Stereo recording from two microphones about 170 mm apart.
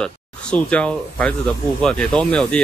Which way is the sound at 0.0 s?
5° left (ahead or behind).